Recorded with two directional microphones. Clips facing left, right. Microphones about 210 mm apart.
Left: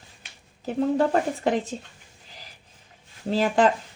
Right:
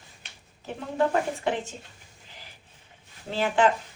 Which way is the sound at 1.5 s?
35° left (ahead or behind).